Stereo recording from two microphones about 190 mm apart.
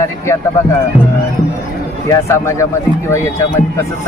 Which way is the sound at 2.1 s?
15° left (ahead or behind).